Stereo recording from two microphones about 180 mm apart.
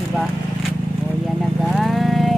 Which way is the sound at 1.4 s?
Centre (ahead or behind).